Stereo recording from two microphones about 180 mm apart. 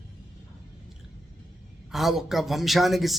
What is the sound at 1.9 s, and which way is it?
A man's voice, centre (ahead or behind).